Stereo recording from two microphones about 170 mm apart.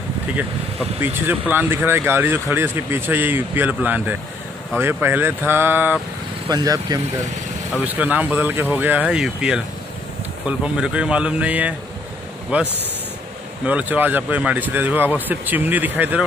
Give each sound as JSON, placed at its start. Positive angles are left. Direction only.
{"t": 0.4, "sound": "speech", "side_deg": -10}
{"t": 7.7, "sound": "speech", "side_deg": -10}
{"t": 10.6, "sound": "speech", "side_deg": -5}